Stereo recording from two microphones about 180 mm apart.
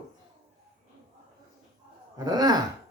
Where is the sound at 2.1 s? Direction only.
20° right (ahead or behind).